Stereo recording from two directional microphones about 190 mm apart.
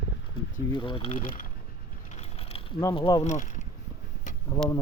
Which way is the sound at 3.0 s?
25° left (ahead or behind).